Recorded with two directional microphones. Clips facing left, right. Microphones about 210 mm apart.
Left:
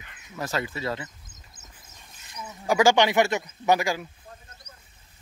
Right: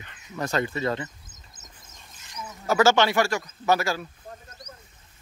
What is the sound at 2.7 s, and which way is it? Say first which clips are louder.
Speech: even; 15° left (ahead or behind).